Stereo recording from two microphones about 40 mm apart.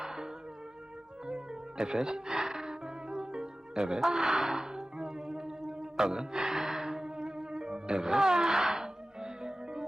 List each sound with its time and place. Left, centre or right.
0.0 s music: centre
1.9 s music: centre
3.9 s music: centre